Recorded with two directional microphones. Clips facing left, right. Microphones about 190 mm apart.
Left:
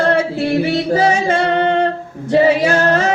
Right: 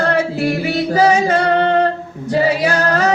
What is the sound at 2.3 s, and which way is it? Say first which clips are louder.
Female singing: left 3 dB; 25° left (ahead or behind).